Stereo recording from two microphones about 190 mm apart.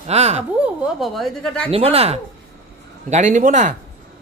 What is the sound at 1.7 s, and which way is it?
A man's voice, 30° right (ahead or behind).